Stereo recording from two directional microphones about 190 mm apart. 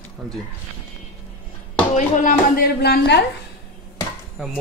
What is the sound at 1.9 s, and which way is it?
Speech, 40° left (ahead or behind).